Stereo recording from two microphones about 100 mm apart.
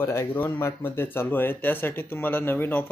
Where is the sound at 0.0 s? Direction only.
25° left (ahead or behind).